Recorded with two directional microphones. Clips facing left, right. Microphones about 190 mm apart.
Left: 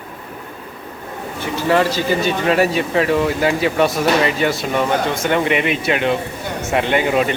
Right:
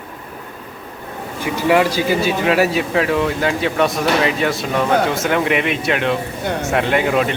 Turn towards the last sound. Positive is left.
turn(degrees=0)  # may be behind; listen again after turning